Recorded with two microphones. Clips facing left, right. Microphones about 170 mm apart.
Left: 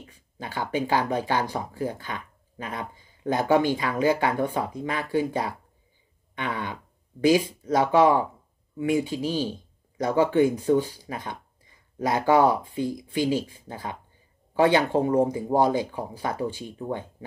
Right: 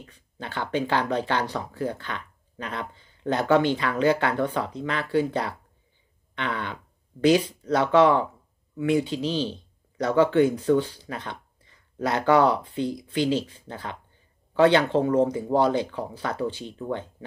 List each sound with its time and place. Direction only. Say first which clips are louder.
0.0 s speech: even; 10° left (ahead or behind)
6.3 s throat clearing: even; 10° left (ahead or behind)
7.3 s speech: even; 10° left (ahead or behind)